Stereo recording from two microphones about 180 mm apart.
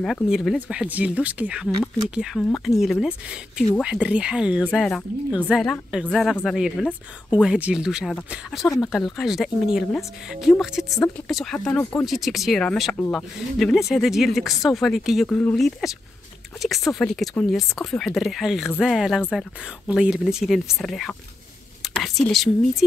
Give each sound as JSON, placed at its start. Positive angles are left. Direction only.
{"t": 0.0, "sound": "speech", "side_deg": 0}